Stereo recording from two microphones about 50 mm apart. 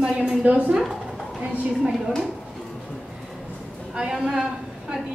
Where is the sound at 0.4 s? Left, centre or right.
Right.